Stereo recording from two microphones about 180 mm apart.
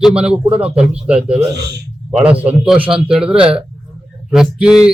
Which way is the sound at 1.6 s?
70° right (ahead or behind).